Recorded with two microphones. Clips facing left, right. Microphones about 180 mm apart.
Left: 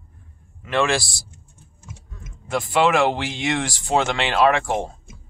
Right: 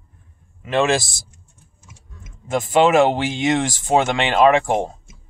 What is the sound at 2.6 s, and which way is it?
Speech, 20° right (ahead or behind).